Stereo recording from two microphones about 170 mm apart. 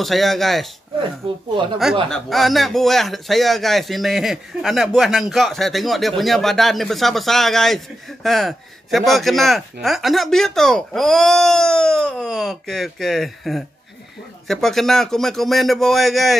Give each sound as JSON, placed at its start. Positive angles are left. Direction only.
{"t": 0.0, "sound": "speech", "side_deg": 0}
{"t": 1.2, "sound": "speech", "side_deg": -30}
{"t": 2.0, "sound": "speech", "side_deg": 0}